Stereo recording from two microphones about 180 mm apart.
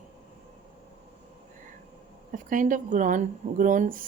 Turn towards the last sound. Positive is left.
turn(degrees=-45)  # may be behind; listen again after turning